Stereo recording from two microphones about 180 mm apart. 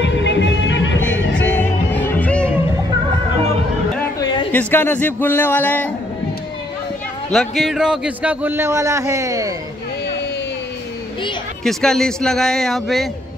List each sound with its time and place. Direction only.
0.0 s music: 80° left
1.3 s music: 10° left (ahead or behind)
4.2 s a sound: 25° left (ahead or behind)
4.5 s a man's voice: 10° left (ahead or behind)
7.3 s a man's voice: centre (ahead or behind); by 9.5 s 15° right (ahead or behind)
11.6 s speech: 5° left (ahead or behind)